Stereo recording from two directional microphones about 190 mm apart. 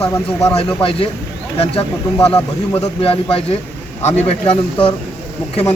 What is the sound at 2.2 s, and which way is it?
Speech, 5° left (ahead or behind).